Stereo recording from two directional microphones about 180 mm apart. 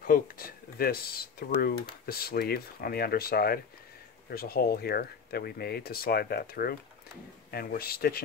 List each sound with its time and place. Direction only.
0.0 s speech: 55° left (ahead or behind)